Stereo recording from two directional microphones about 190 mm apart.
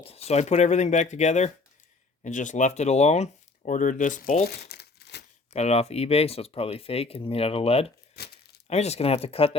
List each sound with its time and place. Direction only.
0.0 s speech: 30° left (ahead or behind)
4.4 s crumpling: 60° left (ahead or behind)
5.5 s speech: 35° left (ahead or behind)
8.2 s crumpling: 60° left (ahead or behind)
8.6 s speech: 35° left (ahead or behind)